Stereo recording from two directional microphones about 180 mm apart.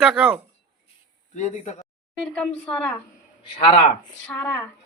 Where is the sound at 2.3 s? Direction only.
5° left (ahead or behind).